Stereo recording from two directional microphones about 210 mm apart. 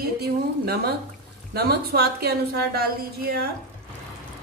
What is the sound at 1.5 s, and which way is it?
A woman's voice, 50° right (ahead or behind).